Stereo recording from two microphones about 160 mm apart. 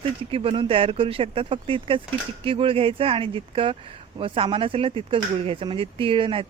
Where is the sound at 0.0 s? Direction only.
35° right (ahead or behind).